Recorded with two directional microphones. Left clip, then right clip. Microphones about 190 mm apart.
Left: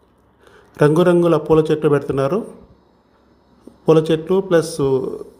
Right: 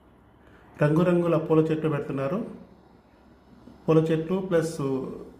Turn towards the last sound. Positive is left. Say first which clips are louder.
# left 10 dB
turn(degrees=40)  # may be behind; listen again after turning